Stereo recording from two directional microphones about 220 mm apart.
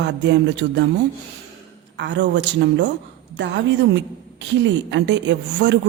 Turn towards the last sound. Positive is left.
turn(degrees=-55)  # may be behind; listen again after turning